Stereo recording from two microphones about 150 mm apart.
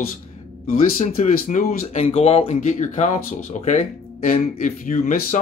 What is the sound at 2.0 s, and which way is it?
Speech, 45° left (ahead or behind).